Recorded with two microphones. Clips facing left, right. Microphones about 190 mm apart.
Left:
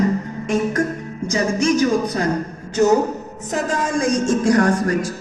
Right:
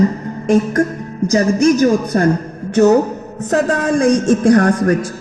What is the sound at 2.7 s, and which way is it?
Music, 60° right (ahead or behind).